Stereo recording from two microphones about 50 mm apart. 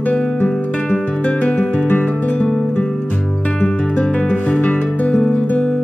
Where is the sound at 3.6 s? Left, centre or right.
Centre.